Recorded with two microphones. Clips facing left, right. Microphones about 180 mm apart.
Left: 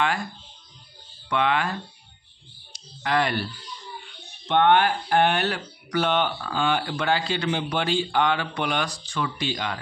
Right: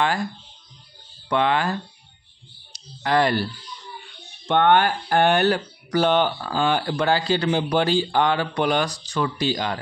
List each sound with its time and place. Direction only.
1.3 s speech: 35° right (ahead or behind)
2.7 s speech: 35° right (ahead or behind)
4.5 s speech: 45° right (ahead or behind)